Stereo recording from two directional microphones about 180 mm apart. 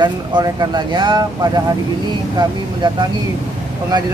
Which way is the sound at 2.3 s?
25° right (ahead or behind).